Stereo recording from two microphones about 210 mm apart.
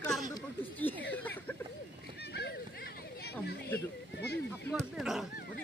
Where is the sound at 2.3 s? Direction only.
50° left (ahead or behind).